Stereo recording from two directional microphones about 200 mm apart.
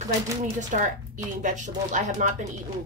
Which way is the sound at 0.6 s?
40° right (ahead or behind).